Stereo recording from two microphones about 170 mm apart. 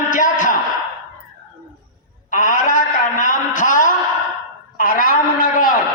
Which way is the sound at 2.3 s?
50° left (ahead or behind).